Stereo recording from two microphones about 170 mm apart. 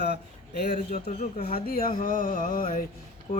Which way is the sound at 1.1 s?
40° left (ahead or behind).